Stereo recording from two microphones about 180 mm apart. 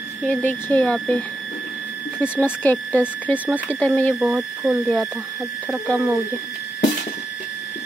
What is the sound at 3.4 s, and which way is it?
Speech, 10° right (ahead or behind).